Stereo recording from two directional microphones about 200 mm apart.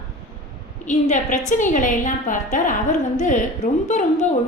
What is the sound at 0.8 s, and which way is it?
A woman's voice, 40° left (ahead or behind).